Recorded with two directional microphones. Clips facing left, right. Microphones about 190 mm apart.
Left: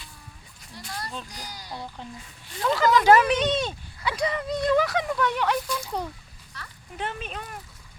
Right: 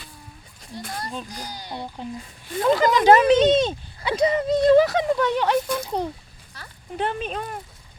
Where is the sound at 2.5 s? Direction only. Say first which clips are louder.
Right 6 dB; 50° right (ahead or behind).